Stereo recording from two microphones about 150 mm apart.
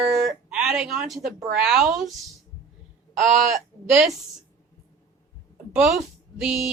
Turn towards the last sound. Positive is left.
turn(degrees=-5)  # may be behind; listen again after turning